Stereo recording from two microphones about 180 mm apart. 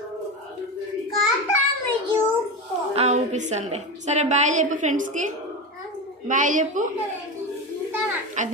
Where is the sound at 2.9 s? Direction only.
40° right (ahead or behind).